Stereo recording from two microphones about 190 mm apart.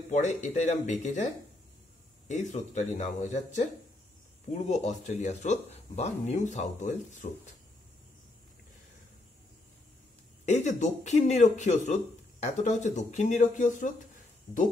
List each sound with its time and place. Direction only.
0.1 s speech: 40° left (ahead or behind)
4.6 s speech: 35° left (ahead or behind)
10.4 s speech: 35° left (ahead or behind)
14.5 s speech: 5° left (ahead or behind)